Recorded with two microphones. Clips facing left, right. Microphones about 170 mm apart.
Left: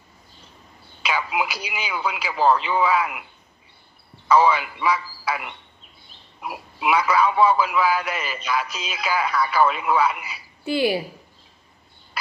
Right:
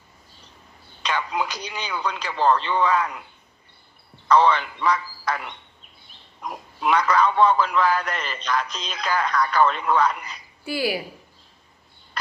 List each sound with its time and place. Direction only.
1.0 s a man's voice: 5° left (ahead or behind)
4.3 s a man's voice: 5° left (ahead or behind)
10.6 s speech: 25° left (ahead or behind)